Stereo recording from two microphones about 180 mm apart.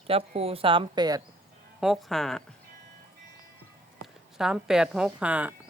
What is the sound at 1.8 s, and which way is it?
Speech, centre (ahead or behind).